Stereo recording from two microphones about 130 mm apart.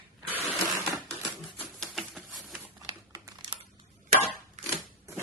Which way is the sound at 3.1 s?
30° right (ahead or behind).